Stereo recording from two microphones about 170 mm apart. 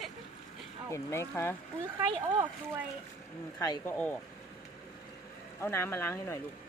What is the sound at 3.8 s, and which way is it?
Speech, 10° left (ahead or behind).